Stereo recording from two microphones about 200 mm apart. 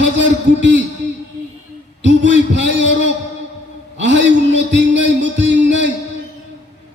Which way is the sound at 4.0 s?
65° right (ahead or behind).